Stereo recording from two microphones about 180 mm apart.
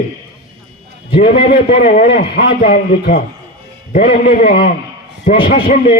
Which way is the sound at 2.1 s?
55° left (ahead or behind).